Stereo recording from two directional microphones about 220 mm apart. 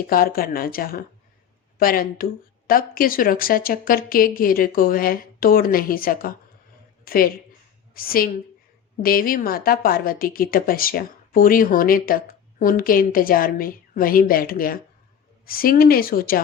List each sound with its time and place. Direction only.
0.1 s a woman's voice: 40° left (ahead or behind)